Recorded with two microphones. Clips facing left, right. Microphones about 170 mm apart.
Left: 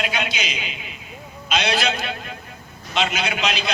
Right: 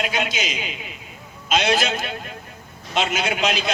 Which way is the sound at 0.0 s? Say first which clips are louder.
Right 1 dB; 45° right (ahead or behind).